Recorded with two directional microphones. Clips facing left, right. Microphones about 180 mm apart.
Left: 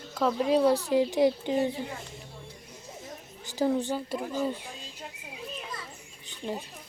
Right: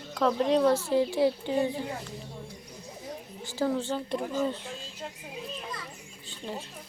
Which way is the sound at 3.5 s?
15° left (ahead or behind).